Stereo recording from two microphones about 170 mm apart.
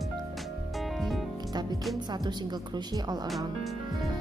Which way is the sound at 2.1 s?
25° right (ahead or behind).